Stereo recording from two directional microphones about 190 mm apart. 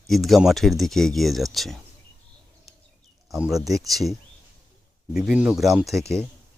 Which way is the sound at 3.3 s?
Centre (ahead or behind).